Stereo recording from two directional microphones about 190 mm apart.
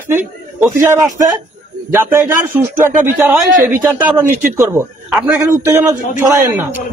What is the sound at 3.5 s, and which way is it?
Speech, 45° right (ahead or behind).